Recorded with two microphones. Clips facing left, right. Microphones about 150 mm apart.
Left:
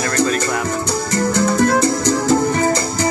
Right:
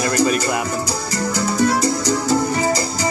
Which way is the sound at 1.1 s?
50° left (ahead or behind).